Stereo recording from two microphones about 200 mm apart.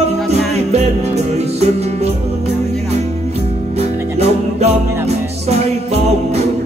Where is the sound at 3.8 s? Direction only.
30° right (ahead or behind).